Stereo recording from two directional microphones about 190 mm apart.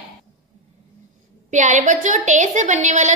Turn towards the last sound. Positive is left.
turn(degrees=-40)  # may be behind; listen again after turning